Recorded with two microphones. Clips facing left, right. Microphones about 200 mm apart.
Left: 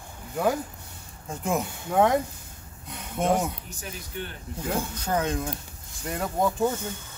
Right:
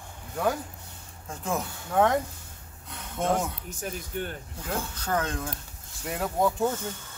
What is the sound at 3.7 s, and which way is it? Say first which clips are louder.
Speech: right 4 dB; 50° right (ahead or behind).